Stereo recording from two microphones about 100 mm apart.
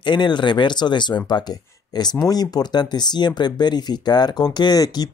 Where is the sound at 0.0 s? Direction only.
50° left (ahead or behind).